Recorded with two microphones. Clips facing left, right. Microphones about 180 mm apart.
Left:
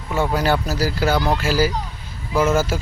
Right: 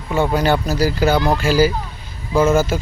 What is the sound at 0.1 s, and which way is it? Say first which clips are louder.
Speech: right 3 dB; 5° left (ahead or behind).